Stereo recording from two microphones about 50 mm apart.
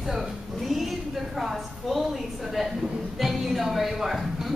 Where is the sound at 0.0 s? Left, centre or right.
Centre.